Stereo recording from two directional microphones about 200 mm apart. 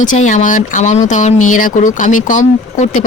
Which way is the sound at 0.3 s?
40° left (ahead or behind).